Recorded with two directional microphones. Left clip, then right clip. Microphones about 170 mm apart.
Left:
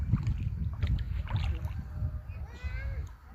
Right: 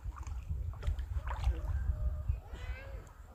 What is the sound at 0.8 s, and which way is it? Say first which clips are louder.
Boat: left 5 dB; centre (ahead or behind).